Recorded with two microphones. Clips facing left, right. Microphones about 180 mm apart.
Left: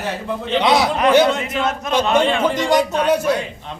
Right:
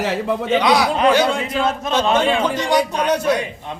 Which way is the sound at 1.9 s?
10° left (ahead or behind).